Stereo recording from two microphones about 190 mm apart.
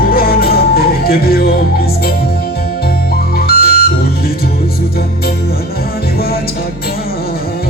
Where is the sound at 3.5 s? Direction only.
55° left (ahead or behind).